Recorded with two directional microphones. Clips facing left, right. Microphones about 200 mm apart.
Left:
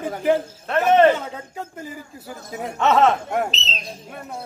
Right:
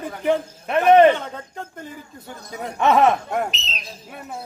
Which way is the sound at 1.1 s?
5° left (ahead or behind).